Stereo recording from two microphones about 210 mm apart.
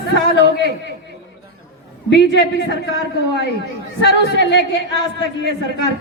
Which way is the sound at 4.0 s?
55° left (ahead or behind).